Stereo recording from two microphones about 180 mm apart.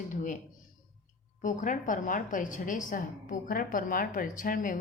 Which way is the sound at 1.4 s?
45° left (ahead or behind).